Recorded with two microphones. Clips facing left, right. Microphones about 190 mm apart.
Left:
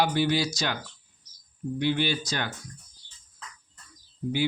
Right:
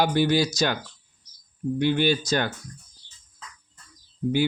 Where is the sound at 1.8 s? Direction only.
50° right (ahead or behind).